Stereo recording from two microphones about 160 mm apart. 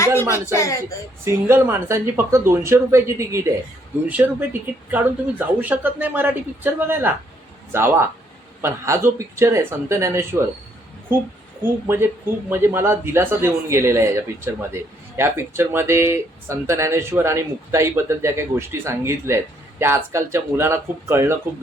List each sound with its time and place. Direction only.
0.0 s speech: 15° left (ahead or behind)
1.2 s speech: 15° right (ahead or behind)
11.6 s speech: 15° right (ahead or behind)